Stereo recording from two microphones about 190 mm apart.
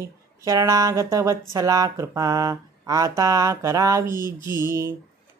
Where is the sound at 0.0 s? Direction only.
15° right (ahead or behind).